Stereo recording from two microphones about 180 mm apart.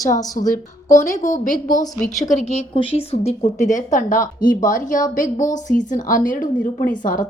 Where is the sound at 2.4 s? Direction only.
35° left (ahead or behind).